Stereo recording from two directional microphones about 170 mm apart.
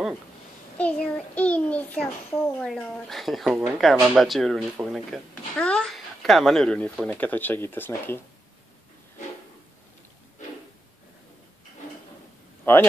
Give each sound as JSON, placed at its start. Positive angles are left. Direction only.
{"t": 0.7, "sound": "a child's voice", "side_deg": 5}
{"t": 12.7, "sound": "speech", "side_deg": 15}